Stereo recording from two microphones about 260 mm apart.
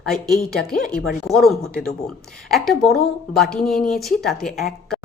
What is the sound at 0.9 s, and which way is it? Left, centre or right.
Speech, centre.